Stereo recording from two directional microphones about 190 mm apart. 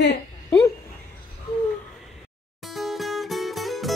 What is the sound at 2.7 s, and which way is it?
Music, centre (ahead or behind).